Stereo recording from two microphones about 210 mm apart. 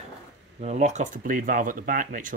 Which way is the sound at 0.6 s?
30° right (ahead or behind).